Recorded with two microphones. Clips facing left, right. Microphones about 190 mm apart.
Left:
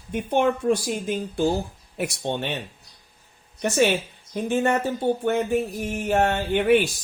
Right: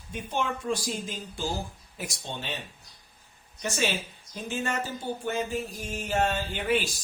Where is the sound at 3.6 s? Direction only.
60° left (ahead or behind).